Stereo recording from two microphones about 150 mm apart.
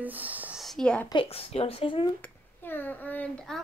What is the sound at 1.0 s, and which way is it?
Speech, 35° left (ahead or behind).